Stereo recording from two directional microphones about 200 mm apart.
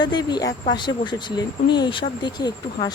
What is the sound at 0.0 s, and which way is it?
Speech, 20° left (ahead or behind).